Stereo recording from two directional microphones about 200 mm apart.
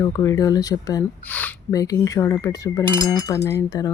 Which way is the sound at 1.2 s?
5° left (ahead or behind).